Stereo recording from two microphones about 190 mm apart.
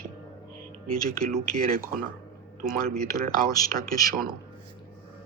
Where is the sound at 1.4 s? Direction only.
50° right (ahead or behind).